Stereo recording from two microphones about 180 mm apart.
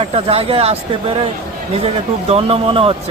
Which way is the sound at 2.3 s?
35° right (ahead or behind).